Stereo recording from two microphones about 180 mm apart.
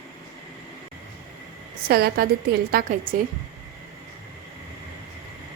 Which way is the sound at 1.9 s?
60° right (ahead or behind).